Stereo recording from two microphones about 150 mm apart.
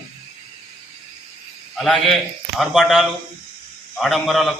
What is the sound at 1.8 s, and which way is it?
A man's voice, centre (ahead or behind).